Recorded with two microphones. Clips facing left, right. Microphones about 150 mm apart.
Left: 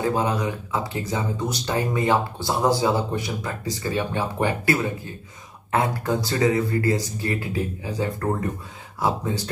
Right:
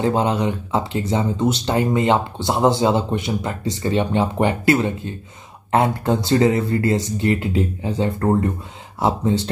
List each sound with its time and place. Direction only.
0.0 s speech: 25° right (ahead or behind)